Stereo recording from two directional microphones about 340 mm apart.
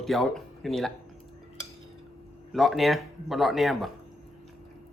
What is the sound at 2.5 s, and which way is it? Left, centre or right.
Speech, centre.